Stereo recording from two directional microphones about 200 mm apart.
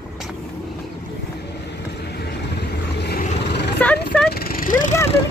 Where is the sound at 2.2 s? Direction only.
55° left (ahead or behind).